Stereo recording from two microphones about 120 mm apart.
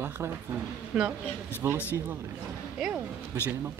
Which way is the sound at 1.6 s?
25° right (ahead or behind).